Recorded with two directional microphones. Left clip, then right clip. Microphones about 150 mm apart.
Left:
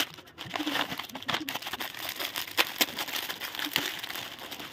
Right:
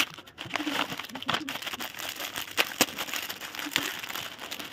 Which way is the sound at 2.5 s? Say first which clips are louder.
Right 1 dB; 15° right (ahead or behind).